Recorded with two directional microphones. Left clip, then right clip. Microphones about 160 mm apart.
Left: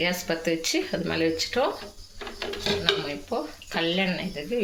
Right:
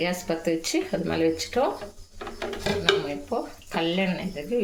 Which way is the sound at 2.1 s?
90° right.